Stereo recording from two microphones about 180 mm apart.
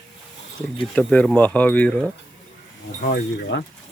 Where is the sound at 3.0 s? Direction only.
70° left (ahead or behind).